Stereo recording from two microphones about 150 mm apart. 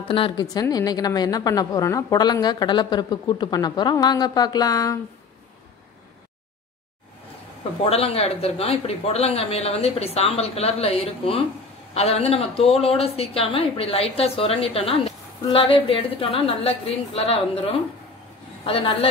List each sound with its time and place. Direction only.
0.1 s a woman's voice: 35° left (ahead or behind)
7.8 s a woman's voice: 40° left (ahead or behind)